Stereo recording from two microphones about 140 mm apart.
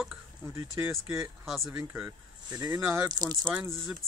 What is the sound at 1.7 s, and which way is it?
Speech, 15° right (ahead or behind).